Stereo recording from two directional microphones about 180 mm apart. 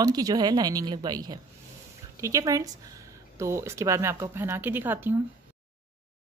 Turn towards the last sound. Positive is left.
turn(degrees=-10)  # may be behind; listen again after turning